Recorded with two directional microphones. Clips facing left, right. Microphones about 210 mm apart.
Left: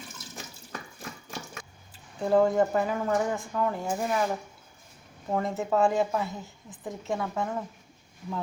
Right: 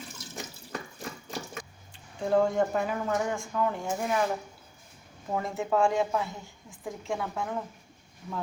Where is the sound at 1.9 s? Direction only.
5° left (ahead or behind).